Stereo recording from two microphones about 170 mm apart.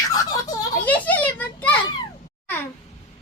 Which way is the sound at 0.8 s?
10° left (ahead or behind).